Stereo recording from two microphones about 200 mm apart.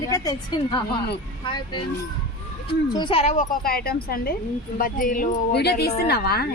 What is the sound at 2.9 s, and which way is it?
A woman's voice, 25° left (ahead or behind).